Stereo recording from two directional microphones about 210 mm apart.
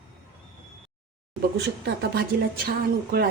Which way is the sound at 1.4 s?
50° right (ahead or behind).